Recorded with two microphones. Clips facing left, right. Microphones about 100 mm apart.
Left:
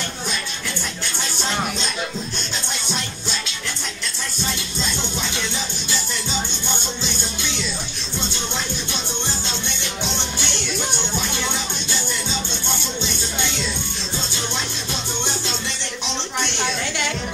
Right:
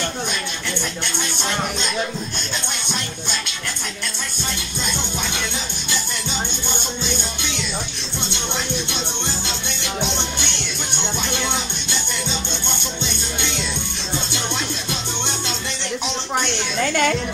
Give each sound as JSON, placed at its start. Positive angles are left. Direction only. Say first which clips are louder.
{"t": 16.8, "sound": "music", "louder": "right 7 dB", "side_deg": -50}